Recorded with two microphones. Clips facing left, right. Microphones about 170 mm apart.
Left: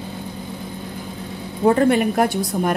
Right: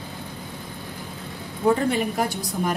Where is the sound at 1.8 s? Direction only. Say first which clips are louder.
Left 6 dB; 65° left (ahead or behind).